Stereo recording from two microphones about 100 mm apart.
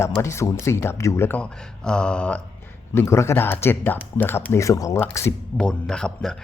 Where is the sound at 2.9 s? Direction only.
30° left (ahead or behind).